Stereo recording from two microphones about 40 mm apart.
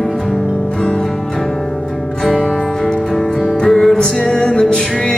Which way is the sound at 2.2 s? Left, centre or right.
Centre.